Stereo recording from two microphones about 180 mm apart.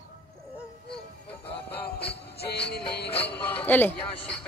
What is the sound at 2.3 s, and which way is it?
Music, 65° left (ahead or behind).